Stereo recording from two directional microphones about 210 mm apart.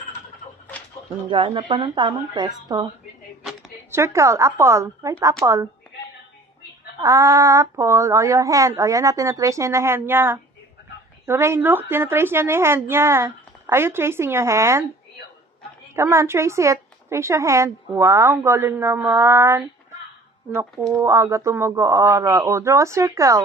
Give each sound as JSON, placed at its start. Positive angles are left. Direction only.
{"t": 1.3, "sound": "speech", "side_deg": -25}
{"t": 3.9, "sound": "a woman's voice", "side_deg": -15}
{"t": 7.0, "sound": "a woman's voice", "side_deg": -15}
{"t": 15.9, "sound": "a woman's voice", "side_deg": -15}
{"t": 20.8, "sound": "a woman's voice", "side_deg": -15}